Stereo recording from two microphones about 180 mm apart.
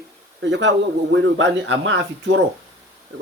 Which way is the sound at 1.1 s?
85° right.